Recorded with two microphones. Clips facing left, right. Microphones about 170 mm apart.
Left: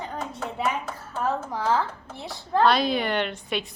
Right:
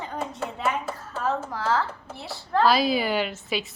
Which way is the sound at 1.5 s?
15° left (ahead or behind).